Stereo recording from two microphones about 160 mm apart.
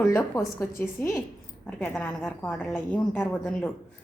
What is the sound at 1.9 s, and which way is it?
A woman's voice, 5° left (ahead or behind).